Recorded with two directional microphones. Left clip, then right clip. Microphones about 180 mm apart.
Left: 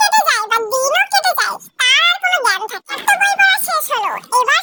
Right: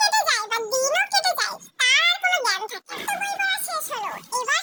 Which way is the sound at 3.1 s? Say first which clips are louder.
Left 13 dB; 55° left (ahead or behind).